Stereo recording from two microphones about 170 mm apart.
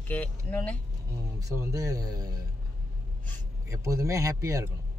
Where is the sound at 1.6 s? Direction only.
20° right (ahead or behind).